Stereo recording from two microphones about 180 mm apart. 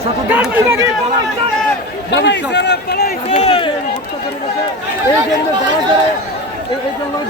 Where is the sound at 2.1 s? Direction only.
75° left (ahead or behind).